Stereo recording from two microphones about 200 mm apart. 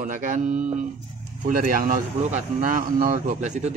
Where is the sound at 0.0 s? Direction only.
40° right (ahead or behind).